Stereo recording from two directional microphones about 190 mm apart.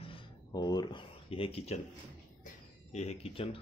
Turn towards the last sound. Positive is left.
turn(degrees=30)  # may be behind; listen again after turning